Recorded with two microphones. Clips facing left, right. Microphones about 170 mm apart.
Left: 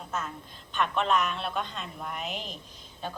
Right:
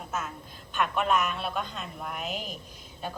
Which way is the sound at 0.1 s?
5° right (ahead or behind).